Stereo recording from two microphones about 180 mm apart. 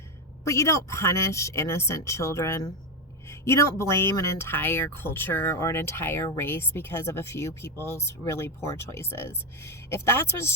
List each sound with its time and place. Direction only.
0.4 s speech: 15° left (ahead or behind)